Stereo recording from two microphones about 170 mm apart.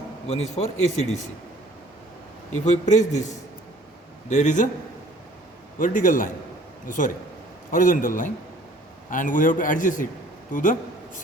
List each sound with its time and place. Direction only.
0.3 s speech: 40° left (ahead or behind)
2.9 s a man's voice: 45° left (ahead or behind)
5.8 s a man's voice: 50° left (ahead or behind)